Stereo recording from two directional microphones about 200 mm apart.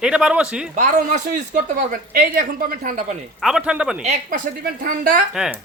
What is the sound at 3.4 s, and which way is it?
Speech, 5° right (ahead or behind).